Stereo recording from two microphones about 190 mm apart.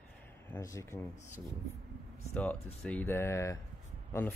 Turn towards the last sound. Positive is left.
turn(degrees=10)  # may be behind; listen again after turning